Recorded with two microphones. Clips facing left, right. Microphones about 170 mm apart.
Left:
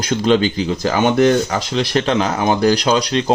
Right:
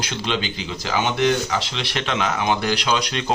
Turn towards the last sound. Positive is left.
turn(degrees=35)  # may be behind; listen again after turning